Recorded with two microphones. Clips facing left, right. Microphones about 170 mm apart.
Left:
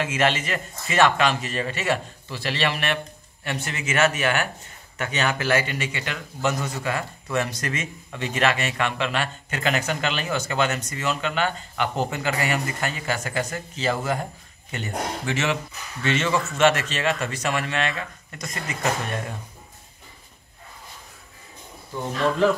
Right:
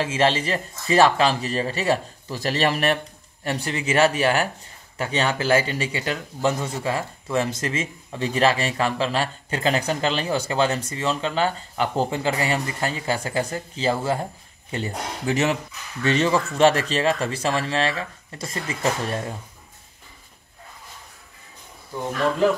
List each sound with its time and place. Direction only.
0.0 s speech: 30° right (ahead or behind)